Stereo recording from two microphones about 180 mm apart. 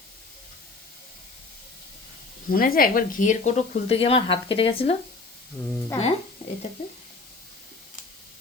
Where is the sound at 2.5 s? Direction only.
55° left (ahead or behind); by 4.9 s 30° left (ahead or behind).